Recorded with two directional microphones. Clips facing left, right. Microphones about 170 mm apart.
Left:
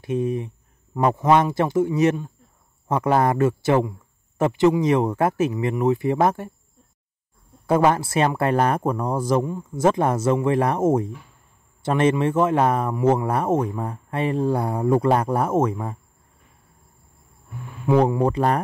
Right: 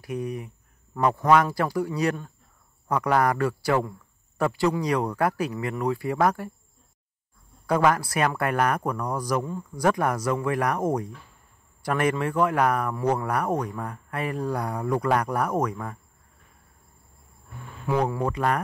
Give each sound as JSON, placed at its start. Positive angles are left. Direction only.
{"t": 0.0, "sound": "speech", "side_deg": 25}
{"t": 7.6, "sound": "speech", "side_deg": 25}
{"t": 17.8, "sound": "speech", "side_deg": 30}